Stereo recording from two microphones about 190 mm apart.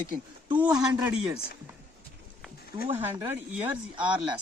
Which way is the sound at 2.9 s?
10° right (ahead or behind).